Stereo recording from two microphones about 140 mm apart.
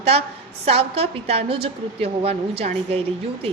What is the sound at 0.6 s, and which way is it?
A woman's voice, 45° right (ahead or behind).